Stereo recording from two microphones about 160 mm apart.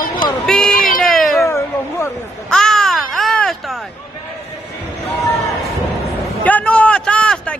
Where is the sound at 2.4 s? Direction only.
5° left (ahead or behind).